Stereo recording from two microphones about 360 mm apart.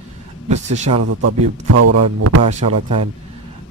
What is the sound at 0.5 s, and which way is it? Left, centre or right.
Speech, centre.